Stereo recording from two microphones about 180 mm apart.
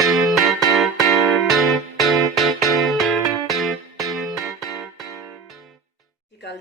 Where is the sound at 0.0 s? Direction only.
Centre (ahead or behind).